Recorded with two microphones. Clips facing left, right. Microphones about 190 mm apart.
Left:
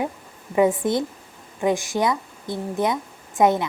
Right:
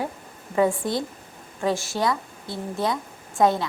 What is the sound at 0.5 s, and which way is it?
A woman's voice, 20° left (ahead or behind).